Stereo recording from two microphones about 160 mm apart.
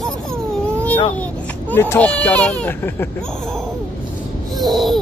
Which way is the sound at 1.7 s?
10° left (ahead or behind).